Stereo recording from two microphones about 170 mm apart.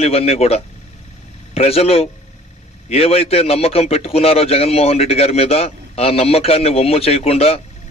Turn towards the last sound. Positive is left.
turn(degrees=35)  # may be behind; listen again after turning